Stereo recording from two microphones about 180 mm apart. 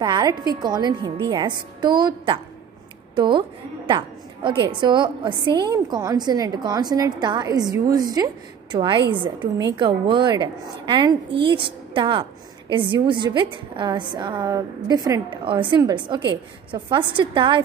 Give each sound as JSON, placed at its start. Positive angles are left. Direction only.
{"t": 0.0, "sound": "a woman's voice", "side_deg": -20}